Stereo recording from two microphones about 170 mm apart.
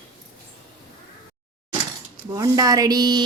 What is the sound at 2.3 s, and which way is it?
Speech, 20° right (ahead or behind).